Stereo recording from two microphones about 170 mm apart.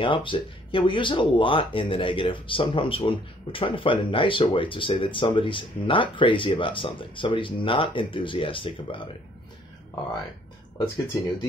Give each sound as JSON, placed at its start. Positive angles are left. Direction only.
{"t": 0.0, "sound": "speech", "side_deg": 30}